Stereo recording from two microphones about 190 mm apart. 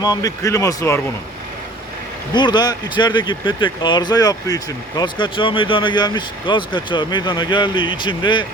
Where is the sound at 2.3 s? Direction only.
25° left (ahead or behind).